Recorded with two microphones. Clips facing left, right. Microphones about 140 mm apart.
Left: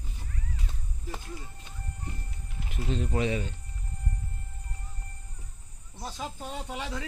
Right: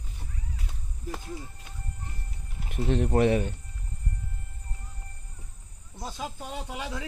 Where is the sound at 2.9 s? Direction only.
60° right (ahead or behind).